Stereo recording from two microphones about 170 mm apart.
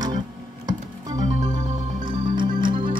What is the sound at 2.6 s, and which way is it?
Music, 30° right (ahead or behind).